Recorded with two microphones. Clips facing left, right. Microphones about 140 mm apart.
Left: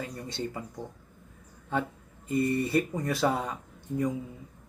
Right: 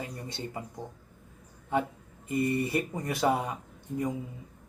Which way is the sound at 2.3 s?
20° right (ahead or behind).